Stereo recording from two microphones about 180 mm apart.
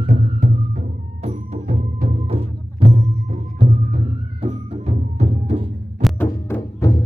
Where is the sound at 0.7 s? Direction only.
35° right (ahead or behind).